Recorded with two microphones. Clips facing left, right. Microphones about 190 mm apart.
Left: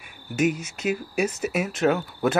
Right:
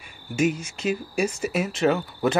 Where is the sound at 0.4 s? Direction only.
Centre (ahead or behind).